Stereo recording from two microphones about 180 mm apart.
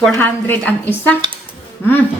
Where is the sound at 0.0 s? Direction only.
10° left (ahead or behind).